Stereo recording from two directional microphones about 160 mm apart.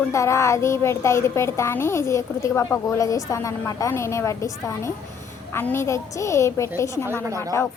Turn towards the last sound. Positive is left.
turn(degrees=-20)  # may be behind; listen again after turning